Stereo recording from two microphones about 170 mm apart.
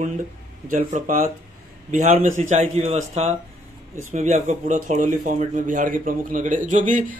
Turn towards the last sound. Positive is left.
turn(degrees=-50)  # may be behind; listen again after turning